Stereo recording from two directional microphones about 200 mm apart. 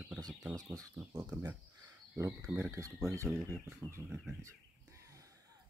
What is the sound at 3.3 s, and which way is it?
Chicken, 5° right (ahead or behind).